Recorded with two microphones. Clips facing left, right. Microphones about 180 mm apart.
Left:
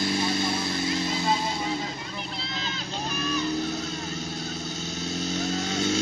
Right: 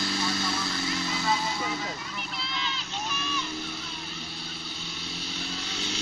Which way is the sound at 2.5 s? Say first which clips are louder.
Left 2 dB; 40° left (ahead or behind).